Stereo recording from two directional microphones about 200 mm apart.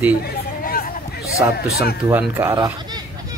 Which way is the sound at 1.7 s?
50° left (ahead or behind).